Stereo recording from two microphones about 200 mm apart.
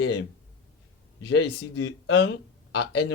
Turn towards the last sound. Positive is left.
turn(degrees=60)  # may be behind; listen again after turning